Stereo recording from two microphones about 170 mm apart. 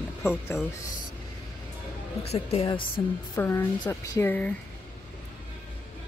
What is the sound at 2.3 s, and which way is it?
Speech, 30° left (ahead or behind).